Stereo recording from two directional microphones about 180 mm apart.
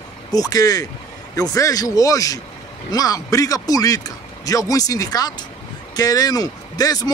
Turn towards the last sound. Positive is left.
turn(degrees=20)  # may be behind; listen again after turning